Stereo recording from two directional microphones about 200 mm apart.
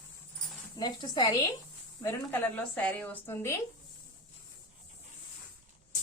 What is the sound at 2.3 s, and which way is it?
A woman's voice, 10° left (ahead or behind).